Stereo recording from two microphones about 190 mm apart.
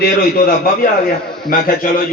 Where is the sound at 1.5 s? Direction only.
45° left (ahead or behind).